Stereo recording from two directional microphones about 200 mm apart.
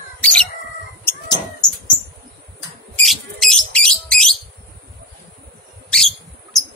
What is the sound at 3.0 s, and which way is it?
Bird, centre (ahead or behind).